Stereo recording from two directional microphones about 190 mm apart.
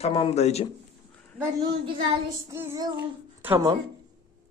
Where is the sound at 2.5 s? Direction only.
15° right (ahead or behind).